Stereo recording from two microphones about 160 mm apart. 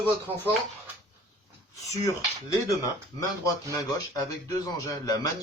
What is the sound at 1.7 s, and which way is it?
A man's voice, 20° left (ahead or behind).